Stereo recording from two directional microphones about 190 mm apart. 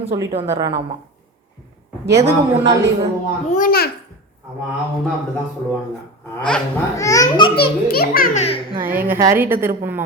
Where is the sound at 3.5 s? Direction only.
50° left (ahead or behind).